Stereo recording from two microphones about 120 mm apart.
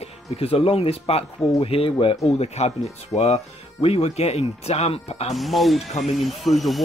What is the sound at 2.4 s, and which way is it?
Speech, 60° left (ahead or behind).